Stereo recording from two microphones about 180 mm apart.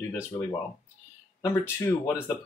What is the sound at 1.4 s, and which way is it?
Speech, 15° left (ahead or behind).